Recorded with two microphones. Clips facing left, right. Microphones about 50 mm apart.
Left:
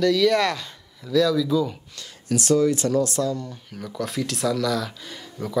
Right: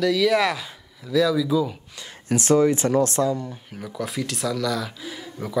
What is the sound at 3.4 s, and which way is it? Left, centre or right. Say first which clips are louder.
Speech: right 1 dB; centre.